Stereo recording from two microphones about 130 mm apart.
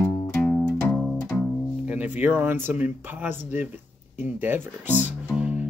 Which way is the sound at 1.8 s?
10° right (ahead or behind).